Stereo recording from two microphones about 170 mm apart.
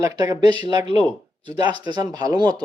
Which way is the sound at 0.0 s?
20° right (ahead or behind).